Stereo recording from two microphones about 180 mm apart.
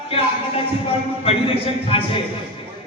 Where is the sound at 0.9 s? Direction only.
35° left (ahead or behind).